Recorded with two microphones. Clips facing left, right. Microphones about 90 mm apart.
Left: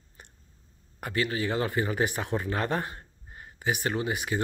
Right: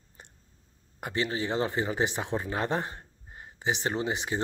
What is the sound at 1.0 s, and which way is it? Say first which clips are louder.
Speech: left 1 dB; 25° right (ahead or behind).